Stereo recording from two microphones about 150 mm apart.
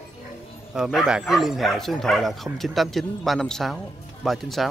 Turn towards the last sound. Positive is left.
turn(degrees=0)  # may be behind; listen again after turning